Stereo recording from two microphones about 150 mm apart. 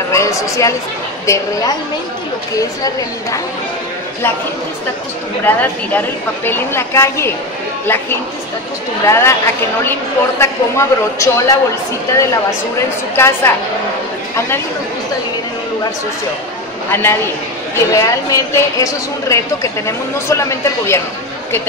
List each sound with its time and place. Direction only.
0.1 s a woman's voice: 20° left (ahead or behind)
5.4 s a woman's voice: 10° left (ahead or behind)
10.4 s a woman's voice: 20° left (ahead or behind)
13.1 s a woman's voice: 15° left (ahead or behind)
16.9 s a woman's voice: 15° left (ahead or behind)